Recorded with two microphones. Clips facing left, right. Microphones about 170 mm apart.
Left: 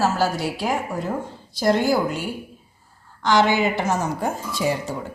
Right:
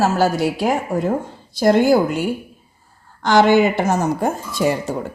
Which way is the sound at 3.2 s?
50° right (ahead or behind).